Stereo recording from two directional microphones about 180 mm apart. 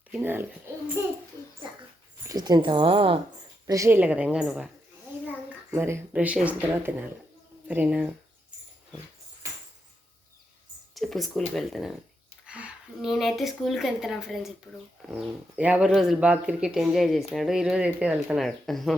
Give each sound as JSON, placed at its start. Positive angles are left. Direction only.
{"t": 0.1, "sound": "speech", "side_deg": -10}
{"t": 1.6, "sound": "speech", "side_deg": -25}
{"t": 3.7, "sound": "speech", "side_deg": -15}
{"t": 5.7, "sound": "speech", "side_deg": -10}
{"t": 10.9, "sound": "speech", "side_deg": 0}